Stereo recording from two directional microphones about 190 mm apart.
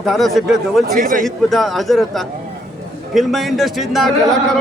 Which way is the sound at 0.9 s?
45° right (ahead or behind).